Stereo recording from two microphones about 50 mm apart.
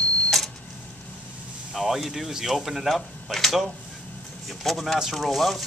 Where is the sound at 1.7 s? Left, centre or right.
Centre.